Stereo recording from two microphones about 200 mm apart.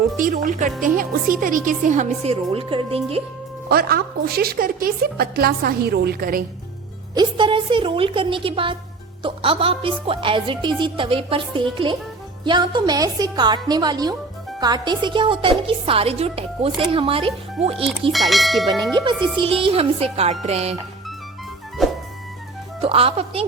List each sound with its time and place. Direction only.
0.4 s a woman's voice: 40° right (ahead or behind)
3.7 s a woman's voice: 50° right (ahead or behind)
7.1 s a woman's voice: 20° right (ahead or behind)
18.1 s speech: centre (ahead or behind)
19.4 s a woman's voice: 25° right (ahead or behind)
21.8 s music: centre (ahead or behind)
22.8 s a woman's voice: 30° right (ahead or behind)